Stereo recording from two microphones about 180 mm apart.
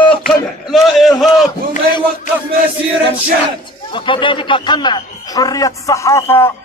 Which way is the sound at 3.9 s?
25° left (ahead or behind).